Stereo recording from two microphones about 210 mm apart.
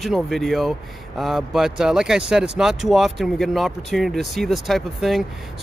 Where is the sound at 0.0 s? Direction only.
Centre (ahead or behind).